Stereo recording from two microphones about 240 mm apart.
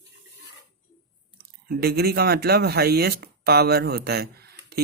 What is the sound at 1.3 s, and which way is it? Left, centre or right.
Speech, right.